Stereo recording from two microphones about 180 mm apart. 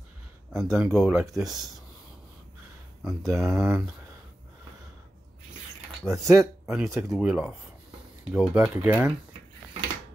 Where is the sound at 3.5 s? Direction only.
15° right (ahead or behind).